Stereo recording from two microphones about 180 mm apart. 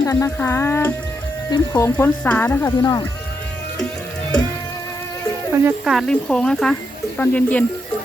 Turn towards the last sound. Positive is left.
turn(degrees=5)  # may be behind; listen again after turning